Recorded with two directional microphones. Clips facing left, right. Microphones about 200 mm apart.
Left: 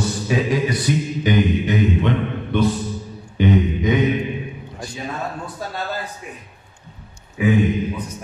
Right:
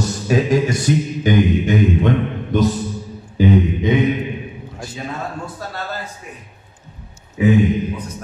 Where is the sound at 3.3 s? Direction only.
35° right (ahead or behind).